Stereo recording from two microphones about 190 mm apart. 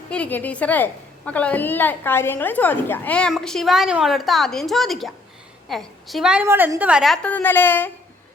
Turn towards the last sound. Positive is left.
turn(degrees=10)  # may be behind; listen again after turning